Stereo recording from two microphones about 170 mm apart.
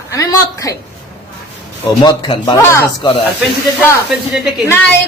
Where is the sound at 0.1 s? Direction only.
20° left (ahead or behind).